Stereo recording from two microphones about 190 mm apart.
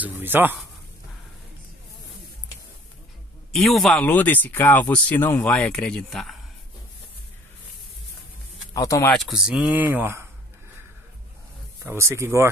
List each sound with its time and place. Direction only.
0.0 s speech: 10° right (ahead or behind)
3.5 s speech: centre (ahead or behind)
8.7 s speech: 15° left (ahead or behind)
9.1 s speech: centre (ahead or behind)
11.8 s speech: 15° right (ahead or behind)